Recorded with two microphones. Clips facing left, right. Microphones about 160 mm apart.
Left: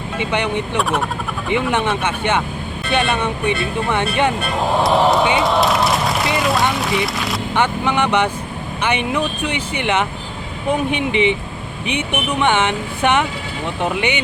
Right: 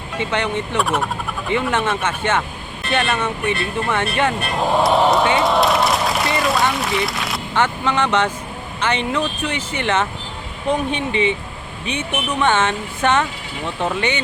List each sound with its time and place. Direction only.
0.2 s speech: 15° left (ahead or behind)
0.8 s speech: centre (ahead or behind)
1.5 s speech: 15° left (ahead or behind)
4.8 s speech: centre (ahead or behind)
5.4 s a sound: centre (ahead or behind)
7.5 s speech: 15° left (ahead or behind)